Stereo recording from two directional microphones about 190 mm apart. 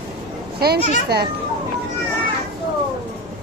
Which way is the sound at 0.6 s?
55° right (ahead or behind).